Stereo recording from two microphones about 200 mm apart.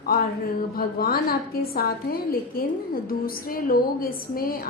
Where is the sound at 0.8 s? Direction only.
50° left (ahead or behind).